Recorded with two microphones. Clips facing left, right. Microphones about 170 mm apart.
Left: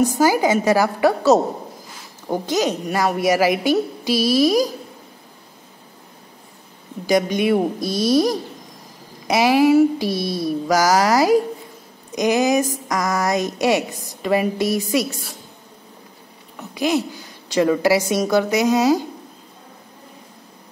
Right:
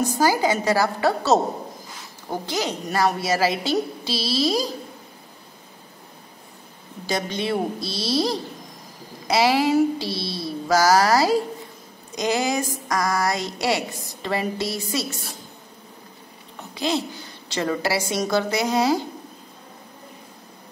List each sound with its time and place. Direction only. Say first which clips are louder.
0.0 s a woman's voice: left 4 dB; 15° left (ahead or behind)
2.4 s a woman's voice: left 6 dB; 20° left (ahead or behind)
7.1 s a woman's voice: left 8 dB; 15° left (ahead or behind)
16.7 s a woman's voice: left 4 dB; 15° left (ahead or behind)